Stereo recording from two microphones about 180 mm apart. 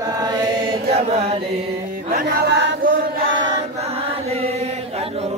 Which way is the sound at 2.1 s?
55° right (ahead or behind).